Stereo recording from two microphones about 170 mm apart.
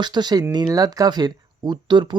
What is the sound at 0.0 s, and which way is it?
Speech, 25° right (ahead or behind).